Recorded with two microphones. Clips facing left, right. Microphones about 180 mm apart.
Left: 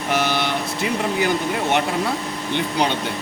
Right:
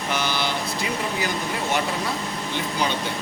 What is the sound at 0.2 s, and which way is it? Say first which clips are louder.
Vehicle: left 4 dB; 60° left (ahead or behind).